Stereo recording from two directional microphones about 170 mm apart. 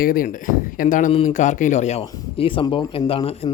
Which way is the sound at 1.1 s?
35° left (ahead or behind).